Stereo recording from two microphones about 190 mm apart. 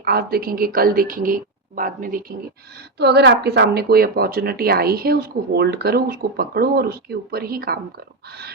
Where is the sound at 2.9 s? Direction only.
60° right (ahead or behind).